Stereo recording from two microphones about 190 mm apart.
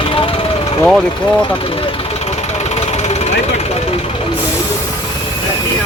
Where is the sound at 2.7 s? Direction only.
35° left (ahead or behind).